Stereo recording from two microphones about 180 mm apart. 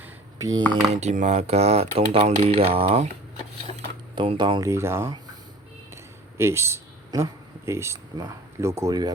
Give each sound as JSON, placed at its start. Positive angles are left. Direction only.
{"t": 0.0, "sound": "a sound", "side_deg": -20}
{"t": 0.9, "sound": "speech", "side_deg": -40}
{"t": 4.1, "sound": "speech", "side_deg": -25}
{"t": 4.7, "sound": "speech", "side_deg": -15}
{"t": 6.3, "sound": "speech", "side_deg": -15}